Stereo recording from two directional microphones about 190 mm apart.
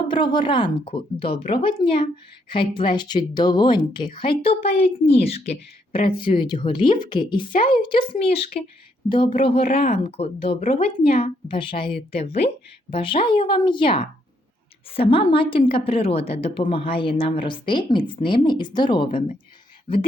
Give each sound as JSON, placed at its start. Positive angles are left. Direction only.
{"t": 0.1, "sound": "a woman's voice", "side_deg": 25}